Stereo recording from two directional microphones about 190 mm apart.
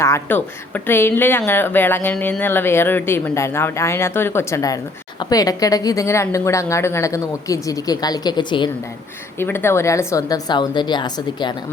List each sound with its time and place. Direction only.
0.0 s a woman's voice: 10° left (ahead or behind)
9.4 s a woman's voice: 10° left (ahead or behind)